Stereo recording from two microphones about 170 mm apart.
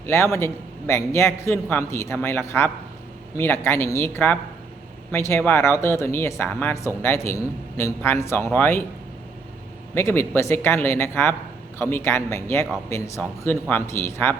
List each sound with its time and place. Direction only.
0.0 s speech: 15° left (ahead or behind)
9.9 s speech: 15° left (ahead or behind)